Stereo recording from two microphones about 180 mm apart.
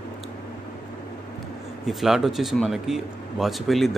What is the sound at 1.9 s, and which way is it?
Speech, centre (ahead or behind).